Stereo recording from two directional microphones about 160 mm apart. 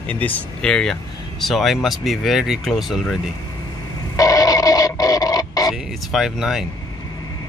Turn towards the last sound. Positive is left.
turn(degrees=-5)  # may be behind; listen again after turning